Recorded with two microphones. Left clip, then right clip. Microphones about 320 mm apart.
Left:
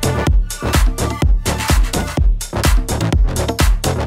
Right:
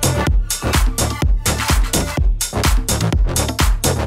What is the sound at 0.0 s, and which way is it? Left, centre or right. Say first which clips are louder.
Music: even; centre.